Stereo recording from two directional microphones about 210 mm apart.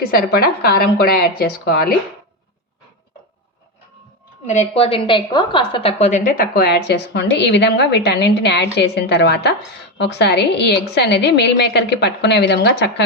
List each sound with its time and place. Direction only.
0.0 s a woman's voice: 45° left (ahead or behind)
4.4 s a woman's voice: 30° left (ahead or behind); by 13.1 s 55° left (ahead or behind)